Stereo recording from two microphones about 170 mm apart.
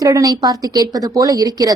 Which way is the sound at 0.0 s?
20° right (ahead or behind).